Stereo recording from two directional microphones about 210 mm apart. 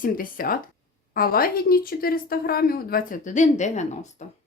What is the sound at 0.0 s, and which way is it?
A woman's voice, 40° left (ahead or behind).